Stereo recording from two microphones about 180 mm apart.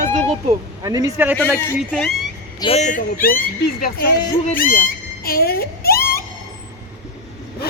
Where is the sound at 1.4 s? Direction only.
10° left (ahead or behind).